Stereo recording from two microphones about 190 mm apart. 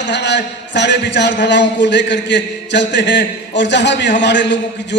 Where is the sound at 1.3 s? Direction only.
65° left (ahead or behind).